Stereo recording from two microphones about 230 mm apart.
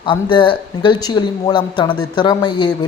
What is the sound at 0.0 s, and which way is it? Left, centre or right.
Speech, left.